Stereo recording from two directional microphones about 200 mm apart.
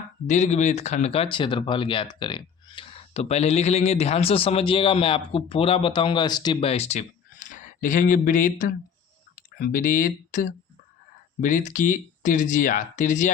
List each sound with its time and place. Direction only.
0.3 s speech: 35° left (ahead or behind)